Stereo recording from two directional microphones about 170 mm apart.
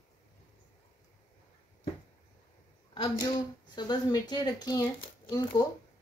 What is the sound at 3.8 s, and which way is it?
Speech, 25° left (ahead or behind).